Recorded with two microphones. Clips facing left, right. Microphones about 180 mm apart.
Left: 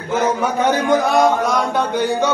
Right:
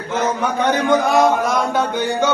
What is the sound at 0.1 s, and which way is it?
A man's voice, 5° left (ahead or behind).